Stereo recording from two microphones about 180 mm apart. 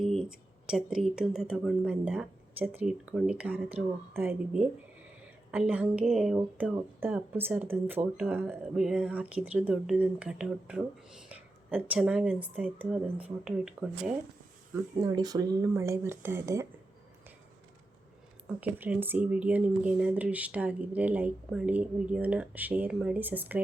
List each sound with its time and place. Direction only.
0.0 s speech: centre (ahead or behind)
15.0 s speech: 20° right (ahead or behind)
18.4 s speech: 10° right (ahead or behind)